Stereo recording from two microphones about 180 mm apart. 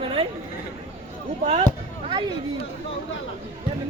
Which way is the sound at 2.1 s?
30° right (ahead or behind).